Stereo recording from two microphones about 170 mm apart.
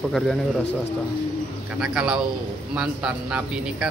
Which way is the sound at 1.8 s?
5° right (ahead or behind).